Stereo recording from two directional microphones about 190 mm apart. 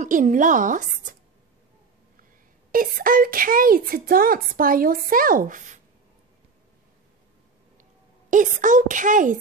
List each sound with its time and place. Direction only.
0.0 s a woman's voice: 40° right (ahead or behind)
2.7 s speech: 50° right (ahead or behind)
8.3 s speech: 40° right (ahead or behind)